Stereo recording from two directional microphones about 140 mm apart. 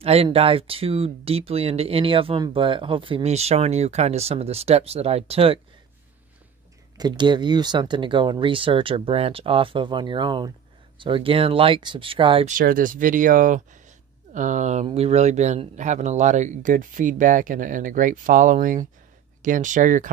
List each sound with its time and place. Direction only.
0.0 s speech: 45° right (ahead or behind)
7.0 s speech: 30° right (ahead or behind)
12.4 s speech: 80° right